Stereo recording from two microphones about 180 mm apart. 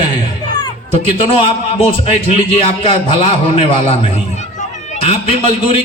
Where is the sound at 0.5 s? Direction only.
30° left (ahead or behind).